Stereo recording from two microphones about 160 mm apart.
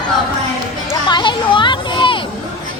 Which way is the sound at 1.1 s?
30° left (ahead or behind).